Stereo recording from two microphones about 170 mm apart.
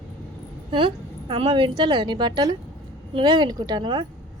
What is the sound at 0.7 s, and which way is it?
A woman's voice, 30° right (ahead or behind).